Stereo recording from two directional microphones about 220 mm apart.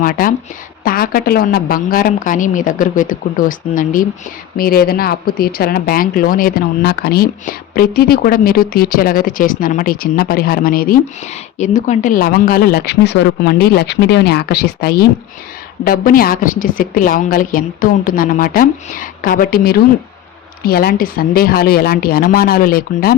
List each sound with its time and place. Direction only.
0.0 s speech: 40° left (ahead or behind)